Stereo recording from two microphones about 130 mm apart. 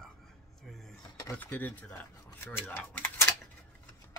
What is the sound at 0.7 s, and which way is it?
Speech, centre (ahead or behind).